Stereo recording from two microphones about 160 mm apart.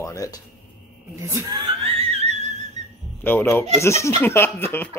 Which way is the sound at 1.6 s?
35° right (ahead or behind).